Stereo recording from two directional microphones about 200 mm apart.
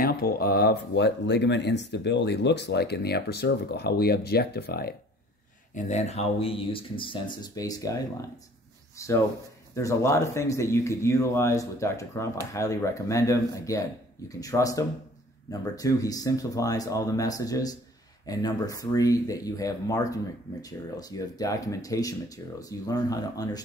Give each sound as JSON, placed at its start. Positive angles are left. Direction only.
{"t": 0.0, "sound": "speech", "side_deg": 50}
{"t": 5.8, "sound": "speech", "side_deg": 35}